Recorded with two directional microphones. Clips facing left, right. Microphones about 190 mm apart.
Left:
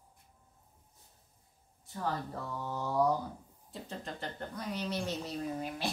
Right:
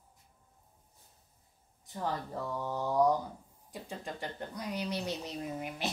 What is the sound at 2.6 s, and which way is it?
Speech, 15° right (ahead or behind).